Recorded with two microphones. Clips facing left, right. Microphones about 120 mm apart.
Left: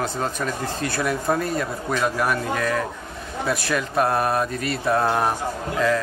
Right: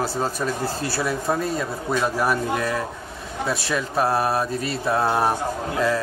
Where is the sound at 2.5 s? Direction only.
20° right (ahead or behind).